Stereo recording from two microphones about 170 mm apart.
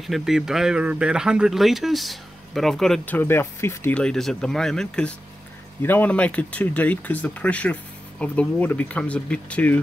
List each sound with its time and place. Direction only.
0.0 s speech: centre (ahead or behind)
3.2 s speech: 15° left (ahead or behind)